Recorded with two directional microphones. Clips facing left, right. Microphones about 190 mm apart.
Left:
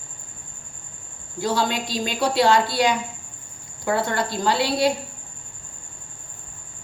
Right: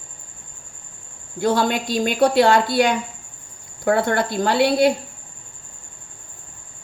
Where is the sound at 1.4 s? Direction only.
55° right (ahead or behind).